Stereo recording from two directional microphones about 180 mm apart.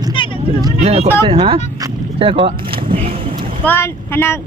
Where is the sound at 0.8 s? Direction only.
35° right (ahead or behind).